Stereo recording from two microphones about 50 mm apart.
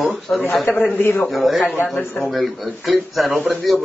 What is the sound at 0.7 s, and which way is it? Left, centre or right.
Speech, left.